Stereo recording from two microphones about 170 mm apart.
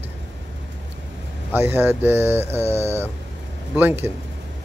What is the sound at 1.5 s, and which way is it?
Mantra, 15° right (ahead or behind).